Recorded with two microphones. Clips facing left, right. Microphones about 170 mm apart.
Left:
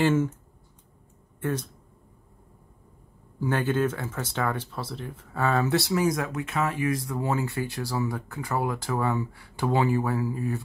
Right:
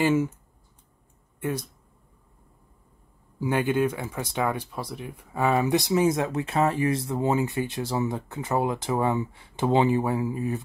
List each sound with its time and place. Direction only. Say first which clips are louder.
0.0 s speech: even; 10° right (ahead or behind)
1.4 s speech: even; 10° right (ahead or behind)
3.3 s speech: right 2 dB; 15° right (ahead or behind)